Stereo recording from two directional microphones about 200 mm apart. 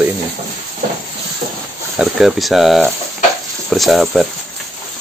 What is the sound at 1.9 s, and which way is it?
Speech, centre (ahead or behind).